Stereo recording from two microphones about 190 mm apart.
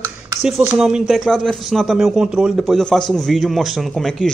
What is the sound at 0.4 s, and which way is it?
A man's voice, centre (ahead or behind).